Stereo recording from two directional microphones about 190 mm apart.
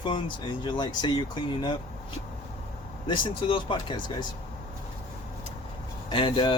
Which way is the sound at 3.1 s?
25° left (ahead or behind).